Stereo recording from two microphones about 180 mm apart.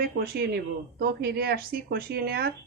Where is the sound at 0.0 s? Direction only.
60° right (ahead or behind).